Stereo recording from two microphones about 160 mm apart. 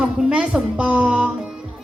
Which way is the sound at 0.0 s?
5° right (ahead or behind).